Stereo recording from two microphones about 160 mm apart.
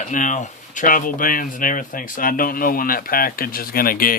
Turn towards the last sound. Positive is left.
turn(degrees=65)  # may be behind; listen again after turning